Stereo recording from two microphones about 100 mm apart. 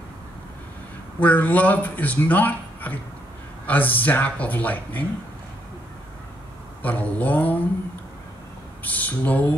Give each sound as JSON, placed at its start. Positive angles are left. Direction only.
{"t": 1.2, "sound": "speech", "side_deg": 15}
{"t": 6.8, "sound": "speech", "side_deg": 15}
{"t": 8.8, "sound": "speech", "side_deg": 15}